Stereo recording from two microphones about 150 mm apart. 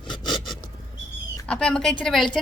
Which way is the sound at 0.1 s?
Centre (ahead or behind).